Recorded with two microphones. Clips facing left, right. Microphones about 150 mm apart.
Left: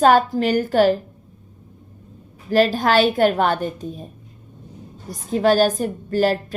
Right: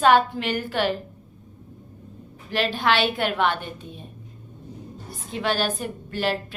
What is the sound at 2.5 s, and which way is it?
A woman's voice, 40° left (ahead or behind).